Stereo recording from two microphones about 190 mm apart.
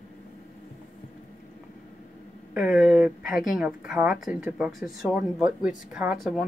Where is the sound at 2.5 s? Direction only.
5° right (ahead or behind).